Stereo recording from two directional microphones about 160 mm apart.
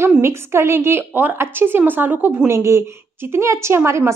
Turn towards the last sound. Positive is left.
turn(degrees=-15)  # may be behind; listen again after turning